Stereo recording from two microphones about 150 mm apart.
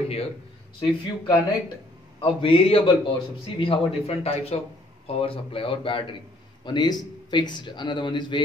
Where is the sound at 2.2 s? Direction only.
35° left (ahead or behind).